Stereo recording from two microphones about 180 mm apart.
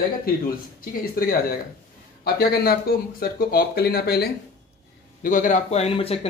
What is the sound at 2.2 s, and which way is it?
Speech, 60° left (ahead or behind).